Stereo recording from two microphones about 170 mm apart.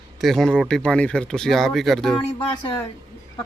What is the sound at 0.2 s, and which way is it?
Speech, centre (ahead or behind).